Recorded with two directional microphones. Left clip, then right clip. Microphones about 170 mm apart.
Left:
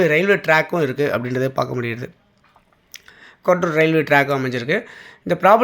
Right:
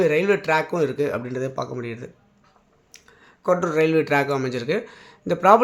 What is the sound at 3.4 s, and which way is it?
Speech, 10° left (ahead or behind).